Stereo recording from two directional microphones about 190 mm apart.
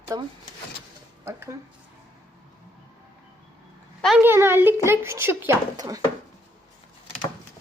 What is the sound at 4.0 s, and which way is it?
A child's voice, 5° right (ahead or behind).